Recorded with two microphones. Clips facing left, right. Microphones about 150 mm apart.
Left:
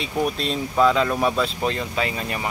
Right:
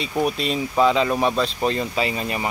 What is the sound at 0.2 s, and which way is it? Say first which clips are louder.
Speech: right 1 dB; 5° right (ahead or behind).